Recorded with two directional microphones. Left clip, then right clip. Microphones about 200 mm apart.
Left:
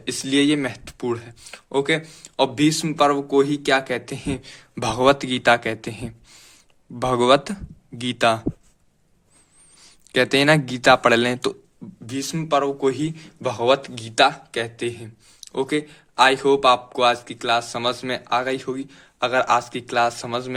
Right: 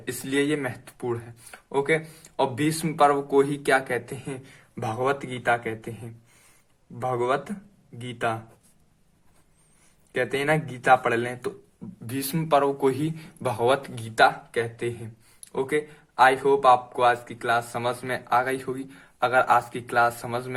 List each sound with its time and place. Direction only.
0.0 s speech: 30° left (ahead or behind); by 4.8 s 45° left (ahead or behind)
4.8 s speech: 60° left (ahead or behind)
10.2 s speech: 55° left (ahead or behind)
12.0 s speech: 20° left (ahead or behind)
14.2 s speech: 35° left (ahead or behind)